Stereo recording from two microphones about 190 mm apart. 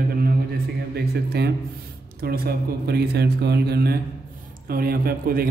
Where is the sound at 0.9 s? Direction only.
60° right (ahead or behind).